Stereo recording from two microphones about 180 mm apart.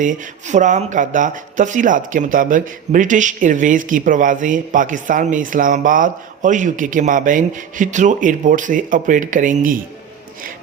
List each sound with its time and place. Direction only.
0.0 s speech: 45° right (ahead or behind)